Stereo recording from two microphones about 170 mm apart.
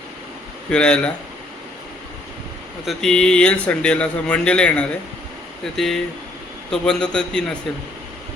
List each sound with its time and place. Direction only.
0.7 s speech: 5° left (ahead or behind)
2.8 s a man's voice: 5° left (ahead or behind)